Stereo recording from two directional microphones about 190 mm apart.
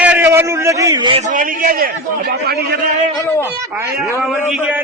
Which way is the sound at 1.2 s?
45° right (ahead or behind).